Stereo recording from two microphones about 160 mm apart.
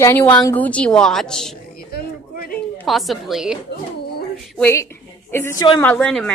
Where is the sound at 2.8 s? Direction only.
Centre (ahead or behind).